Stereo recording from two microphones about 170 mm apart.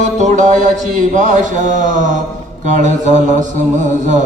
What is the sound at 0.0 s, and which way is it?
Music, 45° right (ahead or behind).